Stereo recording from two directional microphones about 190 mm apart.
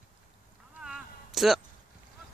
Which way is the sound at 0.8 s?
Centre (ahead or behind).